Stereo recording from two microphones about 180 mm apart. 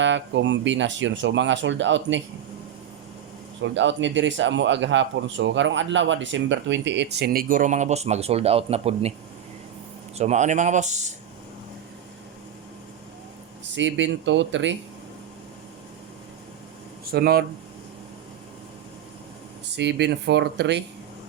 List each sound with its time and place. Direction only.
0.0 s speech: 85° right
3.6 s a man's voice: 90° right; by 9.1 s 35° right (ahead or behind)
10.2 s speech: 40° right (ahead or behind)
13.7 s speech: 90° right
17.1 s speech: 60° right (ahead or behind)
19.7 s speech: 70° right (ahead or behind)